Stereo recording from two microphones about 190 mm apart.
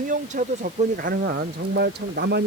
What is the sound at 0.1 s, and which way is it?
Speech, 45° right (ahead or behind).